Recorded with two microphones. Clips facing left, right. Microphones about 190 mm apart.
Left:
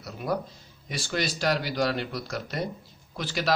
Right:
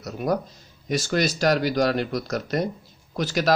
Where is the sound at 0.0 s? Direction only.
45° right (ahead or behind).